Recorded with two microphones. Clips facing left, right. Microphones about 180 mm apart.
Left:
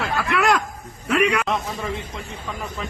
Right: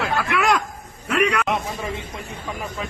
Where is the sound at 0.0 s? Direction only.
Centre (ahead or behind).